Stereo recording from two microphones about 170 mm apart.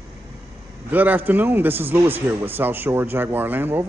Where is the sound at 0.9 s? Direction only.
10° right (ahead or behind).